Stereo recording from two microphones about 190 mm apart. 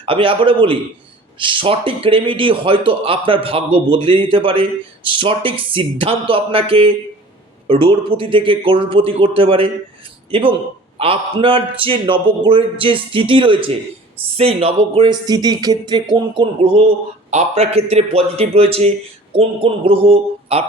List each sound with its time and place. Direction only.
0.0 s a man's voice: 30° right (ahead or behind)